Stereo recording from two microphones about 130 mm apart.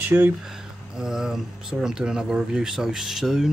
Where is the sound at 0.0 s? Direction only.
15° right (ahead or behind).